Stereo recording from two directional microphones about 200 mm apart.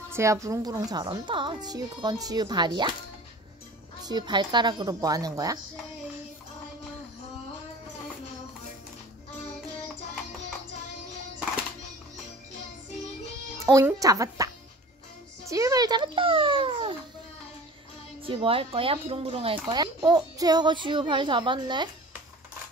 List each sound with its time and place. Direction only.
0.1 s speech: 15° right (ahead or behind)
4.0 s speech: 20° right (ahead or behind)
13.7 s speech: 15° right (ahead or behind)
18.2 s speech: 25° right (ahead or behind)